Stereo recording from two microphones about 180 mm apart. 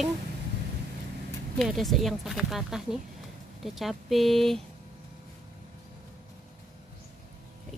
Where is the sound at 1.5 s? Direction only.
Centre (ahead or behind).